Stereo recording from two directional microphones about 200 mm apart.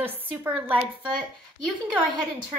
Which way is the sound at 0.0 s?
10° right (ahead or behind).